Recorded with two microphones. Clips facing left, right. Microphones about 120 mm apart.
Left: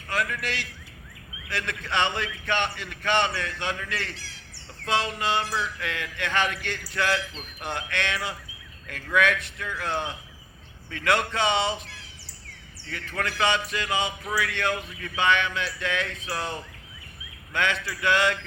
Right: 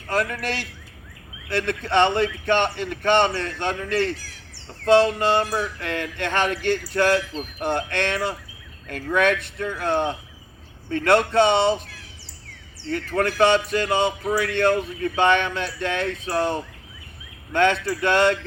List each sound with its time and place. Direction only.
0.1 s speech: 35° right (ahead or behind)
1.8 s speech: 35° right (ahead or behind)
12.9 s speech: 40° right (ahead or behind)
17.8 s speech: 35° right (ahead or behind)